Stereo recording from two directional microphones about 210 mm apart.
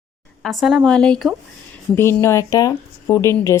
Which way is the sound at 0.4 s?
Centre (ahead or behind).